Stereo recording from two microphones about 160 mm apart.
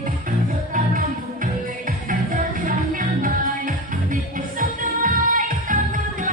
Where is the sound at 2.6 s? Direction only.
55° right (ahead or behind).